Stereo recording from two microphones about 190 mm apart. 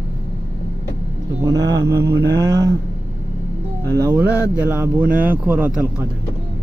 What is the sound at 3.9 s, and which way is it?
Speech, 15° right (ahead or behind).